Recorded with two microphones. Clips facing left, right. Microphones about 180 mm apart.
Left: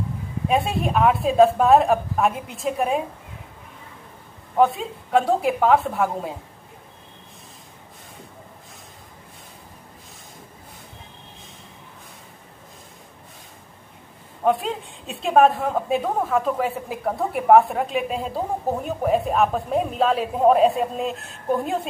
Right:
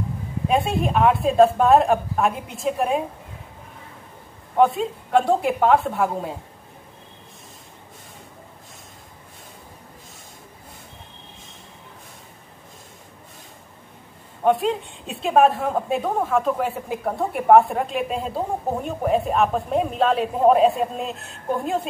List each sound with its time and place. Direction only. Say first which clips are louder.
0.5 s a woman's voice: right 1 dB; centre (ahead or behind)
4.6 s a woman's voice: right 1 dB; centre (ahead or behind)
14.4 s a woman's voice: right 2 dB; centre (ahead or behind)